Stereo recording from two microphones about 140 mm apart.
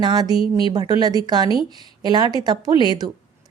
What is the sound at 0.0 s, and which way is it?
Speech, 30° right (ahead or behind).